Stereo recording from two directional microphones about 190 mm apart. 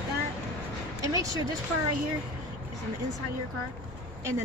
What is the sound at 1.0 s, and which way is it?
Speech, 15° right (ahead or behind).